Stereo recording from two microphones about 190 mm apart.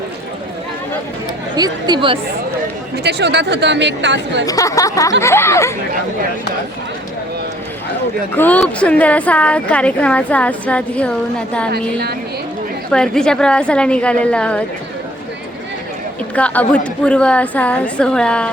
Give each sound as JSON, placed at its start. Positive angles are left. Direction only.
{"t": 1.5, "sound": "speech", "side_deg": -20}
{"t": 3.0, "sound": "speech", "side_deg": -60}
{"t": 4.4, "sound": "a woman's voice", "side_deg": 15}
{"t": 8.4, "sound": "a woman's voice", "side_deg": 5}
{"t": 11.7, "sound": "speech", "side_deg": -55}
{"t": 12.9, "sound": "a woman's voice", "side_deg": 5}
{"t": 16.3, "sound": "a woman's voice", "side_deg": 5}